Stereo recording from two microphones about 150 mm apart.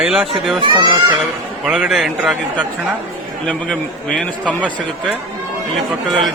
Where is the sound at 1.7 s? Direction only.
5° right (ahead or behind).